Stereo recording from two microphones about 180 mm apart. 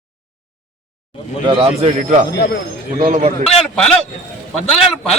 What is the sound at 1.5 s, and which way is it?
Speech, 30° right (ahead or behind).